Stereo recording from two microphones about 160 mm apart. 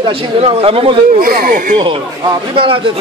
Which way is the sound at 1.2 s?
65° right (ahead or behind).